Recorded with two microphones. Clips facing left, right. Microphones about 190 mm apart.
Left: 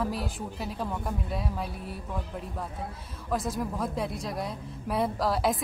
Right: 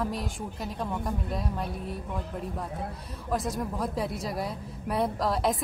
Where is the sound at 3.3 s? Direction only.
Centre (ahead or behind).